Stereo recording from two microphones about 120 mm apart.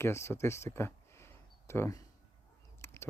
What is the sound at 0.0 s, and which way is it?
Speech, 20° left (ahead or behind).